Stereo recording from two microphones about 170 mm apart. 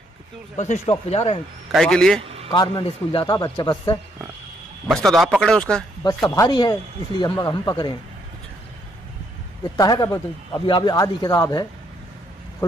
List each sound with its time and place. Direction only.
0.6 s speech: 40° left (ahead or behind)
1.7 s speech: centre (ahead or behind)
2.5 s a man's voice: 25° left (ahead or behind)
4.8 s a man's voice: centre (ahead or behind)
6.2 s a man's voice: 20° left (ahead or behind)
9.8 s a man's voice: 20° left (ahead or behind)